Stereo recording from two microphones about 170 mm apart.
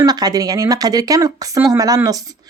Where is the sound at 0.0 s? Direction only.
25° right (ahead or behind).